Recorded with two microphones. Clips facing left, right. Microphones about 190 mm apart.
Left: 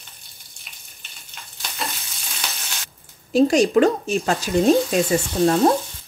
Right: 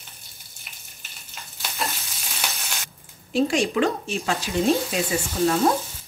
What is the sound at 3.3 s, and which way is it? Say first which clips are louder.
Speech: left 6 dB; 40° left (ahead or behind).